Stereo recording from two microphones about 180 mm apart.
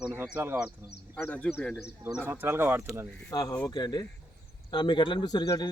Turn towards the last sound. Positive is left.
turn(degrees=20)  # may be behind; listen again after turning